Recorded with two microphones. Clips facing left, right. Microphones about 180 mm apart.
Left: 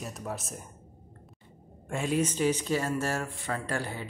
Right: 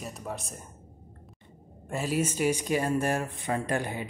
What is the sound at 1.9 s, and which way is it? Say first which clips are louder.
Speech: even; 5° right (ahead or behind).